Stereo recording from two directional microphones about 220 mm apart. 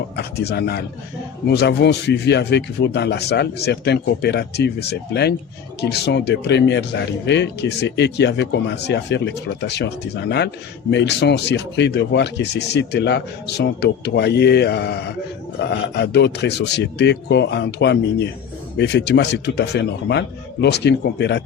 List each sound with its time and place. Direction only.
0.2 s speech: 45° left (ahead or behind)